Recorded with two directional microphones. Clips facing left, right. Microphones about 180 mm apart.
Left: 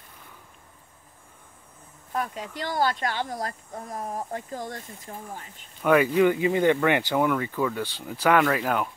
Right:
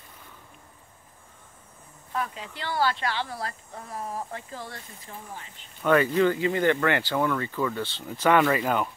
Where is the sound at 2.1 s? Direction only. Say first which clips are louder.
Left 2 dB; 45° left (ahead or behind).